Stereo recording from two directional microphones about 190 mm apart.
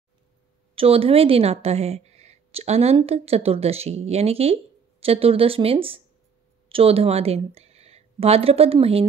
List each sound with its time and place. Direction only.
0.7 s a woman's voice: 30° right (ahead or behind)